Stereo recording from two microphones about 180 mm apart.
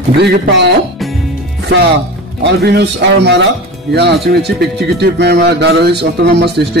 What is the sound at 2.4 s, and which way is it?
A man's voice, 65° right (ahead or behind).